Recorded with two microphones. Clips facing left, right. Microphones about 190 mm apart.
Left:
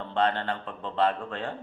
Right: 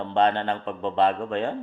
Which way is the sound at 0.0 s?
20° right (ahead or behind).